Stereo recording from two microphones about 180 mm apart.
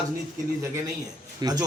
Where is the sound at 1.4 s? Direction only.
20° right (ahead or behind).